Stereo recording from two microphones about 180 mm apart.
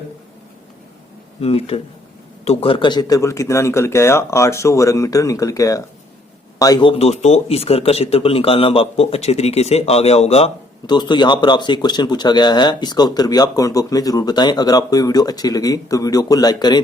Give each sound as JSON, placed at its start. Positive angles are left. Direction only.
{"t": 1.4, "sound": "a man's voice", "side_deg": 35}